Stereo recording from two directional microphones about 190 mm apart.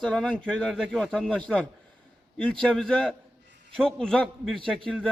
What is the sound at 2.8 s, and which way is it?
A man's voice, centre (ahead or behind).